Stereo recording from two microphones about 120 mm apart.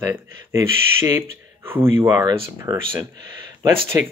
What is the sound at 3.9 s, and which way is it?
Speech, 25° right (ahead or behind).